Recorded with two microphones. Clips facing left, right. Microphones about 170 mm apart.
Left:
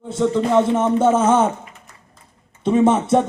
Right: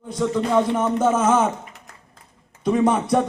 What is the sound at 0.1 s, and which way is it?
A man's voice, 25° left (ahead or behind).